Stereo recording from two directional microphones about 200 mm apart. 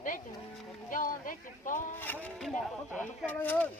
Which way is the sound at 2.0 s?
10° left (ahead or behind).